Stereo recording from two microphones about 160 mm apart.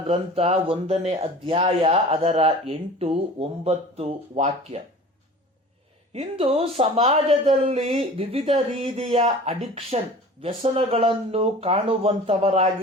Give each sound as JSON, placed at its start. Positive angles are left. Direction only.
{"t": 0.1, "sound": "speech", "side_deg": -40}
{"t": 6.1, "sound": "speech", "side_deg": -35}